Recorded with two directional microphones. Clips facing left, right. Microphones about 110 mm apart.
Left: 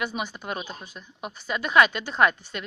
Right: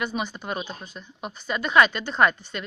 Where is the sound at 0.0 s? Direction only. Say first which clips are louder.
Right 2 dB; 5° left (ahead or behind).